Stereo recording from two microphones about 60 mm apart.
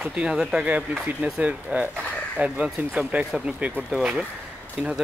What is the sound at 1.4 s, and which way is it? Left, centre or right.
Speech, right.